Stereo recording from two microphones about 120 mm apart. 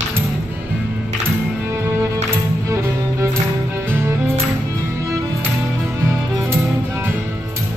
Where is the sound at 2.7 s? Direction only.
20° right (ahead or behind).